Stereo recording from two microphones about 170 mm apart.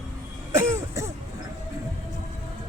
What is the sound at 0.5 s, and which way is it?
Throat clearing, 15° right (ahead or behind).